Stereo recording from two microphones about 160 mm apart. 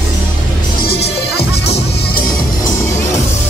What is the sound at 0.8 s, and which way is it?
Music, 80° left.